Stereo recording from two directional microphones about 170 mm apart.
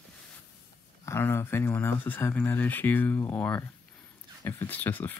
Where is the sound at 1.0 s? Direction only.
15° left (ahead or behind).